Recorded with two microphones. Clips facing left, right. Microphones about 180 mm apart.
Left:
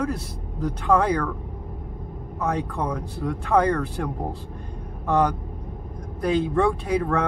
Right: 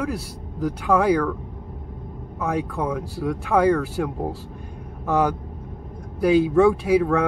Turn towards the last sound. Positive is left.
turn(degrees=-5)  # may be behind; listen again after turning